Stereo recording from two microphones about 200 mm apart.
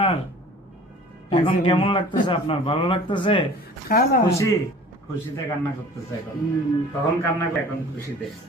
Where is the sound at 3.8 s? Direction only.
45° left (ahead or behind).